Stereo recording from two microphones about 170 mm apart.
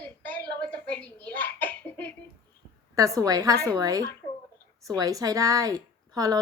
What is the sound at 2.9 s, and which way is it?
A woman's voice, 20° right (ahead or behind).